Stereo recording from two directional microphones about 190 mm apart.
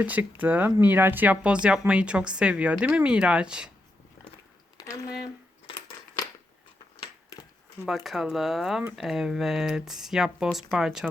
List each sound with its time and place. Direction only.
0.0 s speech: 10° right (ahead or behind)
4.8 s a sound: 20° left (ahead or behind)
7.9 s speech: centre (ahead or behind)